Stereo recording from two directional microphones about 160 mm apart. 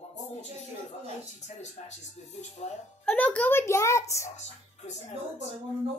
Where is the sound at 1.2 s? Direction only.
45° left (ahead or behind).